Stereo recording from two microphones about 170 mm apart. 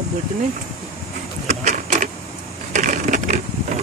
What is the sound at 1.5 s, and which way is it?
Printer, 45° right (ahead or behind).